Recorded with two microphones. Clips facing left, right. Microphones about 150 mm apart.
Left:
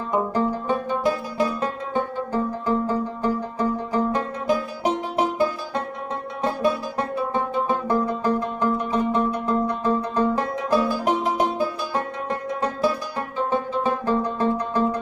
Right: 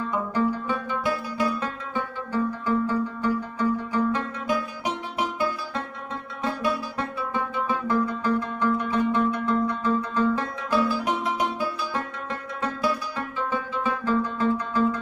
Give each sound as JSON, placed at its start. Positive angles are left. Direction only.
{"t": 0.1, "sound": "music", "side_deg": 40}
{"t": 7.0, "sound": "music", "side_deg": 45}
{"t": 7.9, "sound": "music", "side_deg": 30}